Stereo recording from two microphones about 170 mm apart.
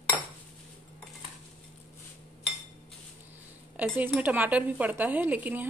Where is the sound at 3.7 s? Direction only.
10° right (ahead or behind).